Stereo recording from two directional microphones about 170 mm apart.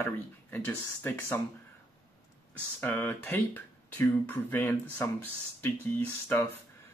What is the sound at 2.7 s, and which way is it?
Speech, 10° left (ahead or behind).